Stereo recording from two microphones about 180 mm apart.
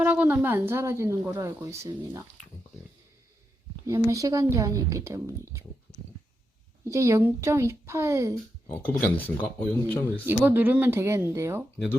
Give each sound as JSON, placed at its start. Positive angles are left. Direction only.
{"t": 0.0, "sound": "a woman's voice", "side_deg": -10}
{"t": 3.8, "sound": "a woman's voice", "side_deg": -15}
{"t": 6.8, "sound": "a woman's voice", "side_deg": -15}
{"t": 9.0, "sound": "speech", "side_deg": 10}
{"t": 10.2, "sound": "a woman's voice", "side_deg": -10}